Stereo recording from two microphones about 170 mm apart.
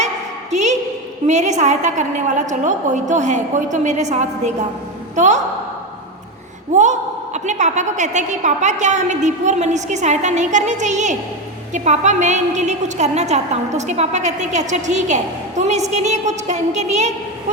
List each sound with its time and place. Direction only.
0.5 s a sound: 45° right (ahead or behind)
1.3 s a woman's voice: 45° right (ahead or behind)
6.7 s a woman's voice: 45° right (ahead or behind)